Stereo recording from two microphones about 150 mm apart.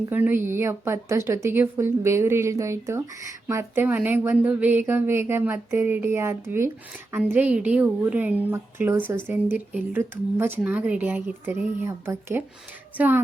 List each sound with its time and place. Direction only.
0.1 s a woman's voice: 15° right (ahead or behind)